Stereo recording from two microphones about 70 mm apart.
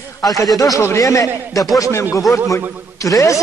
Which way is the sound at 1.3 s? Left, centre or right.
Right.